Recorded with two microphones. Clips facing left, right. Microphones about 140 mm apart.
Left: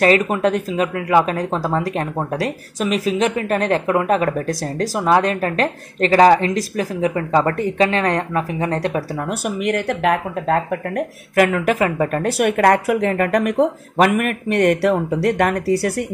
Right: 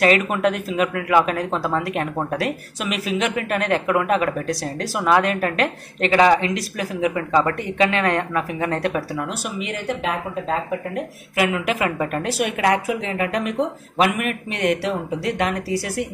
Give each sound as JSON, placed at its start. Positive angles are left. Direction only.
{"t": 0.0, "sound": "speech", "side_deg": 35}
{"t": 9.6, "sound": "speech", "side_deg": 60}
{"t": 12.3, "sound": "speech", "side_deg": 55}